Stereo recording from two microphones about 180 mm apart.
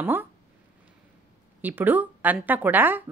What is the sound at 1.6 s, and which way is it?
A woman's voice, 10° right (ahead or behind).